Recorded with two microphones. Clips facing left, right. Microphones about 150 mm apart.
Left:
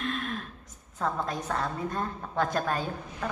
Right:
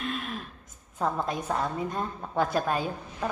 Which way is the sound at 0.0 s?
5° right (ahead or behind).